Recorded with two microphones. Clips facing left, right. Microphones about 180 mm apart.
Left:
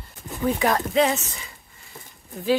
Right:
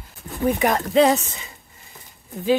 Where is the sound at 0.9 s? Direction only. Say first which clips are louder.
Right 5 dB; 35° right (ahead or behind).